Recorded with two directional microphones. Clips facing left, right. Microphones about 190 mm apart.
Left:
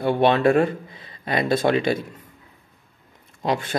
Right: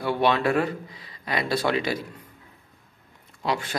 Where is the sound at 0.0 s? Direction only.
25° left (ahead or behind).